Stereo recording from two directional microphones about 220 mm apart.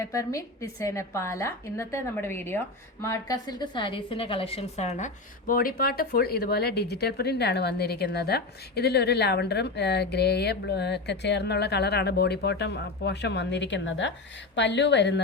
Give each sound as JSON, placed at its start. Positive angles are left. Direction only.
{"t": 0.0, "sound": "a woman's voice", "side_deg": 15}